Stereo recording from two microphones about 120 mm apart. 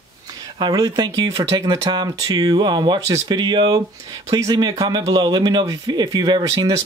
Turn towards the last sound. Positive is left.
turn(degrees=-35)  # may be behind; listen again after turning